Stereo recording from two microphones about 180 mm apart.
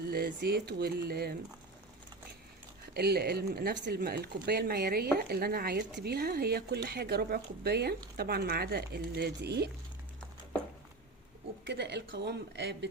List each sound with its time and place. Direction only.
0.1 s speech: 60° right (ahead or behind)
2.9 s speech: 60° right (ahead or behind)
11.6 s speech: 70° right (ahead or behind)